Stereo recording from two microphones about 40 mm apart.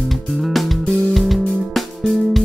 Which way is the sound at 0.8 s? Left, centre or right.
Left.